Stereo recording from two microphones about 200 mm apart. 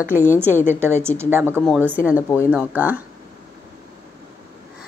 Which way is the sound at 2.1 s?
15° left (ahead or behind).